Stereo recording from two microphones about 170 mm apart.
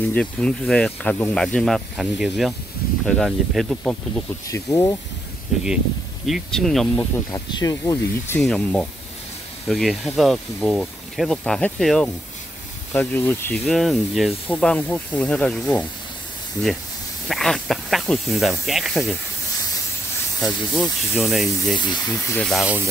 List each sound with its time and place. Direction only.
0.1 s speech: 5° left (ahead or behind)
4.5 s speech: 20° left (ahead or behind)
5.5 s speech: centre (ahead or behind)
7.0 s speech: 20° left (ahead or behind)
13.7 s speech: centre (ahead or behind)
17.3 s speech: centre (ahead or behind)
20.3 s speech: centre (ahead or behind)
21.7 s speech: 25° left (ahead or behind)
22.3 s speech: 5° left (ahead or behind)